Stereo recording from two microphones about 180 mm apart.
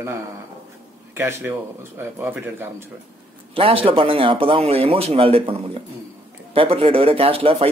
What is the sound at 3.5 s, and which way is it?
Speech, 30° right (ahead or behind).